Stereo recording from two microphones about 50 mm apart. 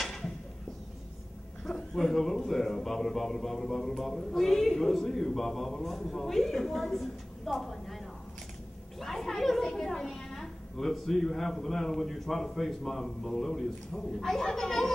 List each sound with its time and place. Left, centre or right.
0.0 s a sound: centre
1.6 s speech: centre
9.0 s a woman's voice: centre